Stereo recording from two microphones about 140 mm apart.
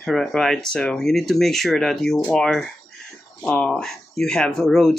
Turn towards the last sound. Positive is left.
turn(degrees=5)  # may be behind; listen again after turning